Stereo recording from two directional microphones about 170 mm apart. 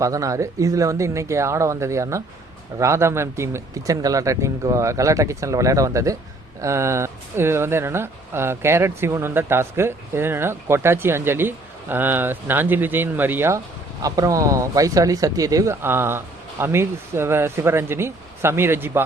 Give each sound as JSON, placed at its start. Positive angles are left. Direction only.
{"t": 0.0, "sound": "speech", "side_deg": -20}